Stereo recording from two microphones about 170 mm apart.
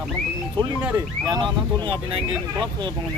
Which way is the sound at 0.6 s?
25° right (ahead or behind).